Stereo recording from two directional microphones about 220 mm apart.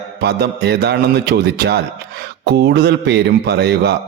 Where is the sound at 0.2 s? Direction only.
45° right (ahead or behind).